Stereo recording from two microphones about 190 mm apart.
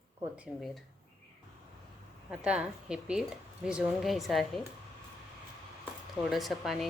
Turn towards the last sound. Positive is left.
turn(degrees=0)  # may be behind; listen again after turning